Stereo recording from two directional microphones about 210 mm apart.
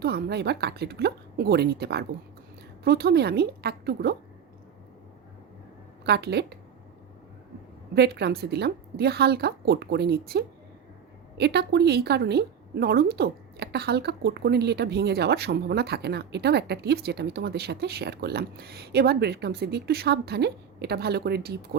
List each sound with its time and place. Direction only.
0.0 s a woman's voice: 50° right (ahead or behind)
6.1 s a woman's voice: 50° right (ahead or behind)
7.9 s a woman's voice: 50° right (ahead or behind)